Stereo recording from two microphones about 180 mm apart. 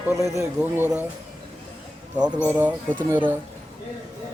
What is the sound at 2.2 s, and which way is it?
Speech, 5° right (ahead or behind).